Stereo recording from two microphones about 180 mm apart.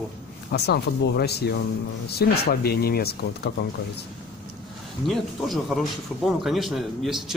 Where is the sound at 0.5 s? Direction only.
65° left (ahead or behind).